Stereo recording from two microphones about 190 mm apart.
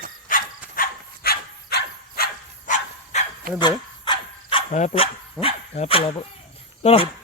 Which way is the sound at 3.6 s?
25° left (ahead or behind).